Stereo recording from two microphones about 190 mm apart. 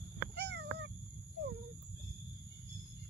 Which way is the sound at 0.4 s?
65° right (ahead or behind).